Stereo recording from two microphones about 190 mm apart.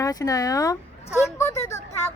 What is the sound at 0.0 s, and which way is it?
Speech, 20° left (ahead or behind).